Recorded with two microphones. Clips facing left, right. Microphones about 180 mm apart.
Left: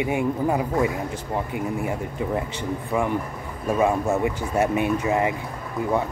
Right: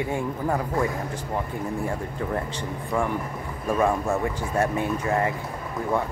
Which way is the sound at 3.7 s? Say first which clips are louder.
Left 2 dB; 20° left (ahead or behind).